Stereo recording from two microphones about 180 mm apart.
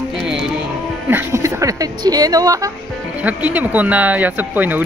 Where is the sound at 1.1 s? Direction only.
15° right (ahead or behind).